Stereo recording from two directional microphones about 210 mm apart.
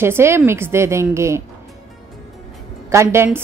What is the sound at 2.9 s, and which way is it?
Speech, 10° right (ahead or behind).